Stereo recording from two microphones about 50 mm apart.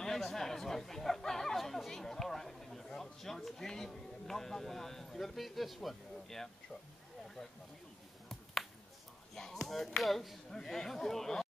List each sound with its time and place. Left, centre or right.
0.2 s speech: centre
9.3 s speech: centre